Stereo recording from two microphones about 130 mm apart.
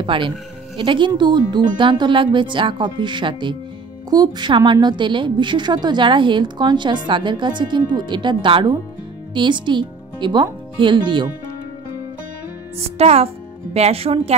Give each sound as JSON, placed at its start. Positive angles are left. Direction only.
{"t": 0.0, "sound": "a woman's voice", "side_deg": -40}
{"t": 12.8, "sound": "a woman's voice", "side_deg": -50}